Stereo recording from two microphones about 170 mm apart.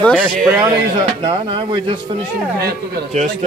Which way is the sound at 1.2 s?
30° right (ahead or behind).